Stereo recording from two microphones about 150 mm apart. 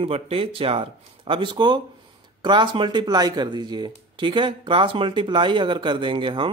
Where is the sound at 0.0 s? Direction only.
40° right (ahead or behind).